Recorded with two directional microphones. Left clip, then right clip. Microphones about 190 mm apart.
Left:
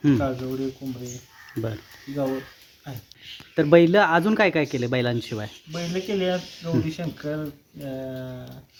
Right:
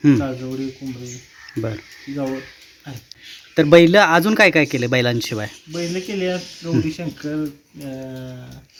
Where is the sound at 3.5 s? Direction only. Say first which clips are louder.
Right 5 dB; 15° right (ahead or behind).